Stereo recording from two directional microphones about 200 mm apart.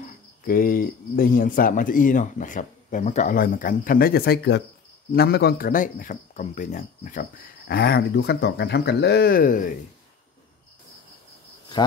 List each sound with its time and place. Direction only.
0.4 s speech: 45° left (ahead or behind)